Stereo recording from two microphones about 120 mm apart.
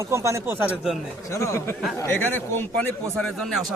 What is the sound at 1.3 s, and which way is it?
Speech, 25° left (ahead or behind).